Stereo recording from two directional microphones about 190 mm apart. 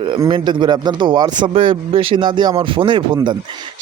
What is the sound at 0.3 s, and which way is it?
Speech, 25° right (ahead or behind).